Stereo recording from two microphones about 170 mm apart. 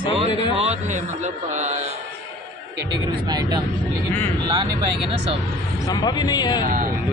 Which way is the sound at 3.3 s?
20° right (ahead or behind).